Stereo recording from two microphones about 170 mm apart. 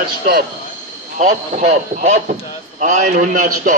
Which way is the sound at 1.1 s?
50° right (ahead or behind).